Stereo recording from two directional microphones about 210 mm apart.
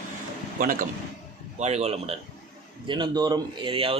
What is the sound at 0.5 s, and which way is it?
A man's voice, 40° right (ahead or behind).